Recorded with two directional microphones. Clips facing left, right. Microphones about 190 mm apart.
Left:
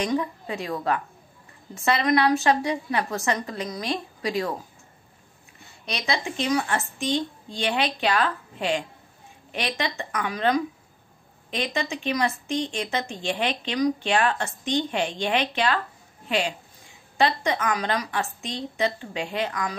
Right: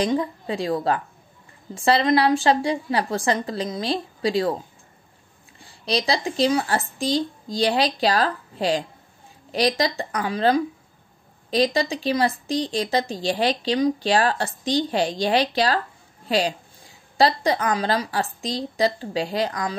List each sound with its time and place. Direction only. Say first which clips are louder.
0.0 s speech: right 3 dB; 30° right (ahead or behind)